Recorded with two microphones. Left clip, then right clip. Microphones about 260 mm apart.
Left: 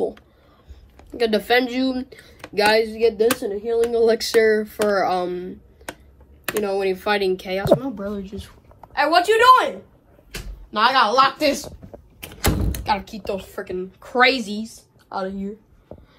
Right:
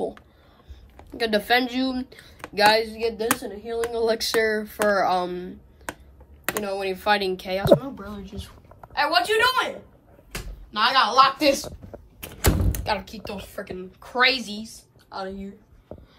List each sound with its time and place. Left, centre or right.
0.9 s speech: right
6.5 s a woman's voice: centre
7.8 s a woman's voice: centre
12.2 s a sound: centre
13.7 s a woman's voice: centre